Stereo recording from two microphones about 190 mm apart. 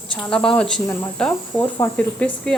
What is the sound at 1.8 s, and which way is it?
Cricket, 5° left (ahead or behind).